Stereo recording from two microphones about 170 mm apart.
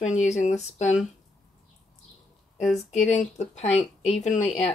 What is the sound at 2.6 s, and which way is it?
Speech, centre (ahead or behind).